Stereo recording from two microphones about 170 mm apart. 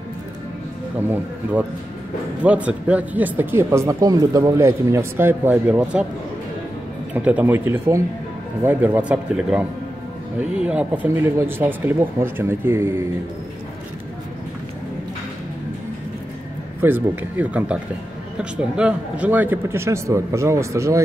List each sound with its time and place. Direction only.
1.0 s speech: 10° right (ahead or behind)
7.2 s speech: 10° right (ahead or behind)
16.8 s speech: 10° right (ahead or behind)